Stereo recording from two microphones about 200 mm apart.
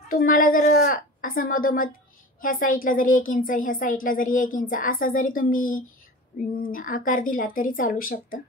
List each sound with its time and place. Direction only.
0.1 s a woman's voice: 45° left (ahead or behind)